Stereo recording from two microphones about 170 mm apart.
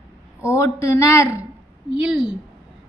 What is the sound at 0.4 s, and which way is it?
Speech, 15° left (ahead or behind).